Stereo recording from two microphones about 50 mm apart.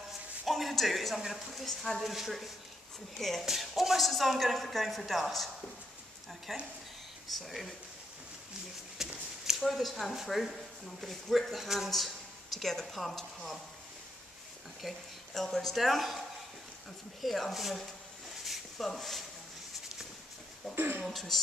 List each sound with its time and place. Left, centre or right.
0.5 s a man's voice: centre
8.9 s a woman's voice: centre
14.8 s a woman's voice: centre
18.4 s a sound: centre
18.9 s a woman's voice: centre
20.7 s speech: right
21.0 s a woman's voice: centre